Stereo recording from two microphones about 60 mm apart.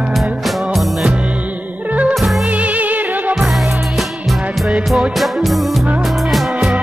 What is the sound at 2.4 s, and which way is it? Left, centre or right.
Music, right.